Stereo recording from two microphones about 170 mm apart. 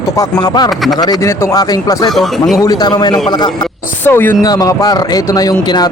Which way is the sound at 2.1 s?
Centre (ahead or behind).